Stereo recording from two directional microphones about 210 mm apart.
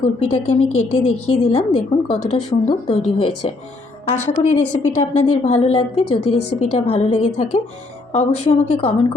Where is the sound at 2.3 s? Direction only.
25° left (ahead or behind).